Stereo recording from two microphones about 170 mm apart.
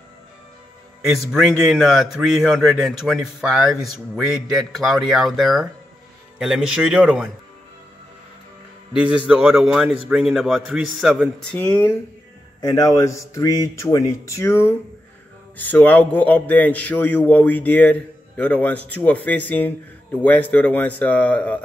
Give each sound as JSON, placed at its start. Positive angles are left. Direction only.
{"t": 1.1, "sound": "speech", "side_deg": 0}
{"t": 8.9, "sound": "speech", "side_deg": -5}
{"t": 11.5, "sound": "a man's voice", "side_deg": 10}